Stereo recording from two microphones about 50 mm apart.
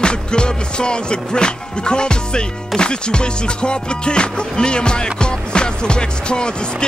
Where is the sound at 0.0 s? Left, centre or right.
Centre.